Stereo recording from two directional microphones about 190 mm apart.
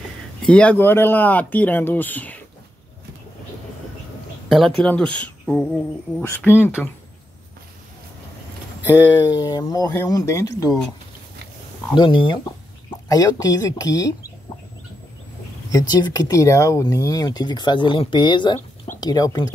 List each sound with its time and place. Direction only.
0.4 s speech: 5° left (ahead or behind)
4.5 s speech: centre (ahead or behind)
9.1 s speech: 20° left (ahead or behind)
11.9 s speech: 25° left (ahead or behind)
15.9 s speech: 20° left (ahead or behind)